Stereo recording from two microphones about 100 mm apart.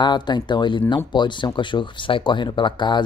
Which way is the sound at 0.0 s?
50° left (ahead or behind).